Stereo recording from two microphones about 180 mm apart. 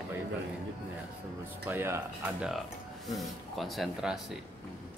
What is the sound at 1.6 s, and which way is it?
Speech, 15° right (ahead or behind).